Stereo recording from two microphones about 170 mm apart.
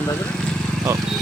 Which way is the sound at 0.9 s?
15° right (ahead or behind).